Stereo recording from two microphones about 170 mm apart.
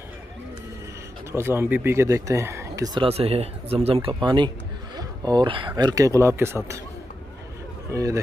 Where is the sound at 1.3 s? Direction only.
15° right (ahead or behind).